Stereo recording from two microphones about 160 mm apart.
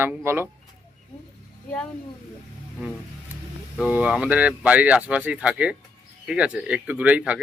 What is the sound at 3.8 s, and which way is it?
Speech, 5° right (ahead or behind).